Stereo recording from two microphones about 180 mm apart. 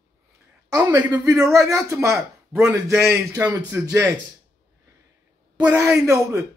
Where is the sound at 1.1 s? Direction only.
20° right (ahead or behind).